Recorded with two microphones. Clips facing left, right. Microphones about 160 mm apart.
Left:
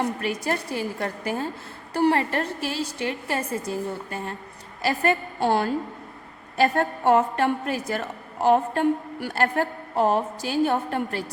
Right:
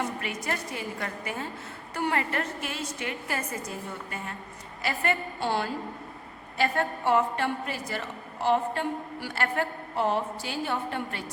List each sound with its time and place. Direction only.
0.0 s a woman's voice: 35° left (ahead or behind)